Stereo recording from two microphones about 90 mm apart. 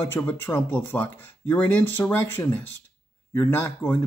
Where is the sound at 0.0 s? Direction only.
25° left (ahead or behind).